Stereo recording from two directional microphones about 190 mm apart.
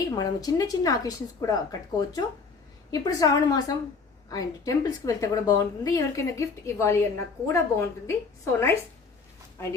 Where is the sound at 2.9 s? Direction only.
20° left (ahead or behind).